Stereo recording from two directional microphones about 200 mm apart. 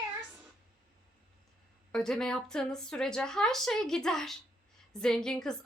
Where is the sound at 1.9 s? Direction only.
5° left (ahead or behind).